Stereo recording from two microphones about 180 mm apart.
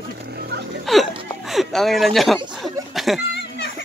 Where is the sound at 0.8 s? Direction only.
Centre (ahead or behind).